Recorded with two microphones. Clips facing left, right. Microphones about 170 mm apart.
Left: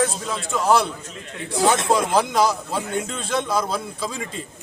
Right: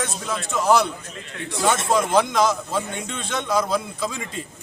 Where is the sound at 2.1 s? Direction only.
5° left (ahead or behind).